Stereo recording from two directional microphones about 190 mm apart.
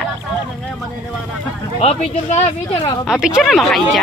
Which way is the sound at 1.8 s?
35° left (ahead or behind).